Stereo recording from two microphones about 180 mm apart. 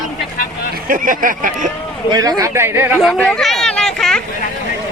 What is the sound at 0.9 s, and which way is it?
Speech, 50° right (ahead or behind).